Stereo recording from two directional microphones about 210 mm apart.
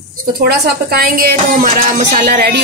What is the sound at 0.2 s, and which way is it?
Speech, 45° right (ahead or behind).